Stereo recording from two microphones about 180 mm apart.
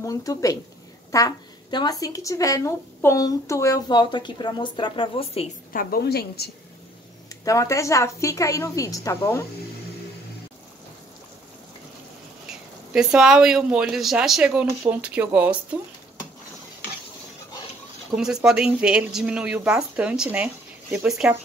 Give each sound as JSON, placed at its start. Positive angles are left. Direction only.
{"t": 0.0, "sound": "a woman's voice", "side_deg": 20}
{"t": 5.7, "sound": "a woman's voice", "side_deg": 50}
{"t": 7.2, "sound": "a woman's voice", "side_deg": 15}
{"t": 12.9, "sound": "speech", "side_deg": -5}
{"t": 18.1, "sound": "speech", "side_deg": -5}